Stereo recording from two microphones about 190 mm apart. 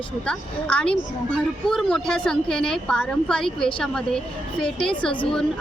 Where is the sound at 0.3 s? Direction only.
5° left (ahead or behind).